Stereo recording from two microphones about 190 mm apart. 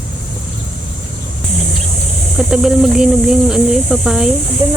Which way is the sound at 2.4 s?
Centre (ahead or behind).